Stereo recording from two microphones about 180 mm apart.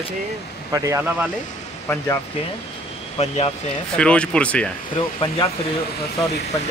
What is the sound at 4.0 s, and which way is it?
Speech, 5° left (ahead or behind).